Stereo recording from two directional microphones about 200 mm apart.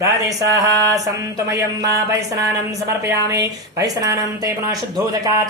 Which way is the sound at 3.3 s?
15° right (ahead or behind).